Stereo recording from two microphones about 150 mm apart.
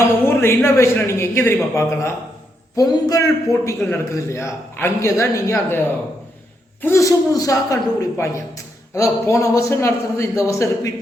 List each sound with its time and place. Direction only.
0.0 s a man's voice: 15° left (ahead or behind)
6.8 s a woman's voice: 20° left (ahead or behind)